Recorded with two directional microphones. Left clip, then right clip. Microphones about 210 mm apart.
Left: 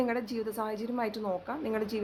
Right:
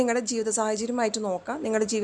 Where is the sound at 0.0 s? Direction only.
30° right (ahead or behind).